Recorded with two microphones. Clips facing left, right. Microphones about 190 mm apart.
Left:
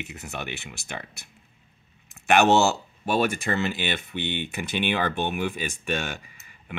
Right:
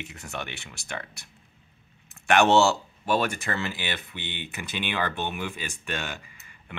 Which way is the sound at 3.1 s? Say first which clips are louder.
Left 2 dB; 20° left (ahead or behind).